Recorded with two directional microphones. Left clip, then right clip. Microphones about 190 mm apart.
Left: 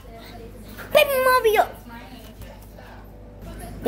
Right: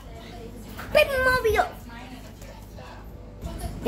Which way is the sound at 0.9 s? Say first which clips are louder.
Left 3 dB; 20° left (ahead or behind).